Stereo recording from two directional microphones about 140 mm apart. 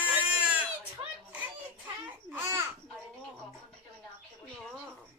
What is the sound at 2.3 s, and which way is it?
Speech, 15° right (ahead or behind).